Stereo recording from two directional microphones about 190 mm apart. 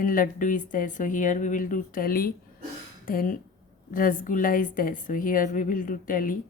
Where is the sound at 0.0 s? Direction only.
45° left (ahead or behind).